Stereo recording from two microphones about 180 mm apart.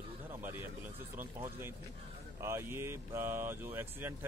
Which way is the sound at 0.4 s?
10° right (ahead or behind).